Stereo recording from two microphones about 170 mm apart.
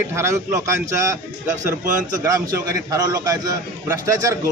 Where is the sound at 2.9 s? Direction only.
20° right (ahead or behind).